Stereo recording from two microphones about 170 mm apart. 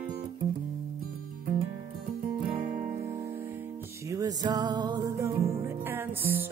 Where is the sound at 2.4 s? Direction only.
55° right (ahead or behind).